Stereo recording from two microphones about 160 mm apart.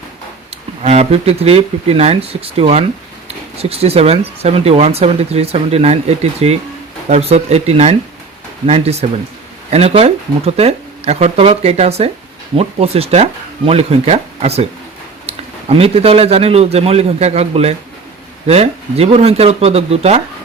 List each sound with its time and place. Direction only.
0.8 s speech: 40° right (ahead or behind)